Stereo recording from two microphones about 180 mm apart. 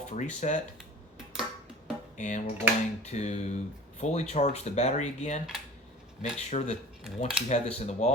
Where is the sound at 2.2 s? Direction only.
40° left (ahead or behind).